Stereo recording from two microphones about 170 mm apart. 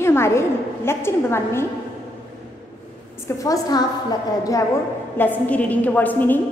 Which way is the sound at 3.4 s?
20° left (ahead or behind).